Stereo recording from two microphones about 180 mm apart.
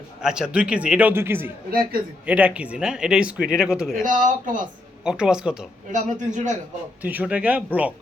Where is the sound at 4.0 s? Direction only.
45° right (ahead or behind).